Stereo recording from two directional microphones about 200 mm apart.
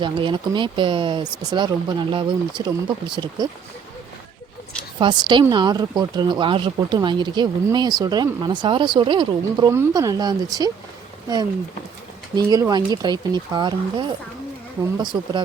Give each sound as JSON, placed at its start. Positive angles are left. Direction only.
{"t": 0.0, "sound": "speech", "side_deg": -25}
{"t": 4.9, "sound": "speech", "side_deg": -20}
{"t": 12.3, "sound": "speech", "side_deg": -20}
{"t": 15.1, "sound": "speech", "side_deg": -20}